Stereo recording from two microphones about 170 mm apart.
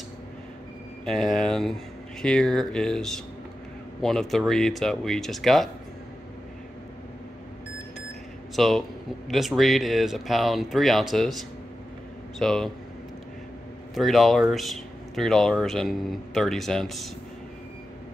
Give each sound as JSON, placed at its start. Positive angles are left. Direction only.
{"t": 1.0, "sound": "speech", "side_deg": 0}
{"t": 8.5, "sound": "speech", "side_deg": 0}
{"t": 13.9, "sound": "speech", "side_deg": 0}